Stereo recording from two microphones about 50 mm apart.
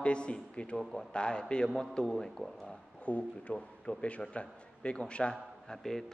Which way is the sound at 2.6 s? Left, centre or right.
Left.